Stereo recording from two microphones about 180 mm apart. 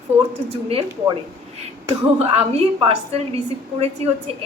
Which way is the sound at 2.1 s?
35° right (ahead or behind).